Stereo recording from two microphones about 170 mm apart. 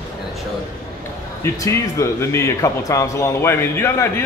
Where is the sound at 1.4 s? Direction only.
15° left (ahead or behind).